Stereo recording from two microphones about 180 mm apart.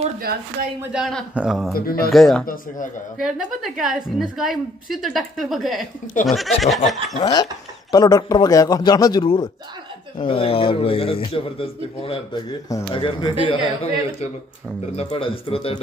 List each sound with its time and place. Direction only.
0.9 s a woman's voice: centre (ahead or behind)
2.4 s a man's voice: 50° left (ahead or behind)
3.2 s a woman's voice: 5° right (ahead or behind)
7.2 s a man's voice: 25° left (ahead or behind)